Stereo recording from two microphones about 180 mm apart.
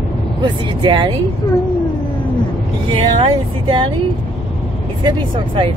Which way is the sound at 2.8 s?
30° right (ahead or behind).